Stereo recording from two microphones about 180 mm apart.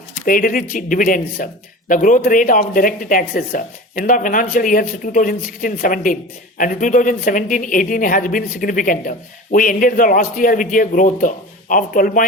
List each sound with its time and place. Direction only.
0.2 s a woman's voice: 50° left (ahead or behind)